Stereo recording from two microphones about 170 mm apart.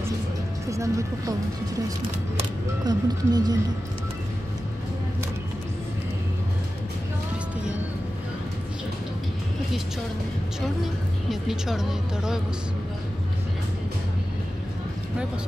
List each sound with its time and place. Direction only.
0.7 s speech: 20° right (ahead or behind)
2.8 s speech: 25° right (ahead or behind)
10.8 s speech: centre (ahead or behind)